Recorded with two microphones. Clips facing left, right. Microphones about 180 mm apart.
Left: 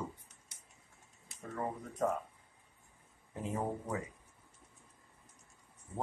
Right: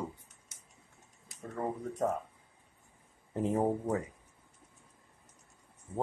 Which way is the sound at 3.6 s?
35° right (ahead or behind).